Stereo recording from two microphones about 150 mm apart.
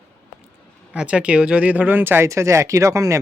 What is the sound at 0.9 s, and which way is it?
Speech, 5° right (ahead or behind).